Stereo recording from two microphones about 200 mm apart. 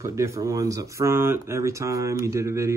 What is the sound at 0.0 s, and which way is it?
Speech, 15° right (ahead or behind).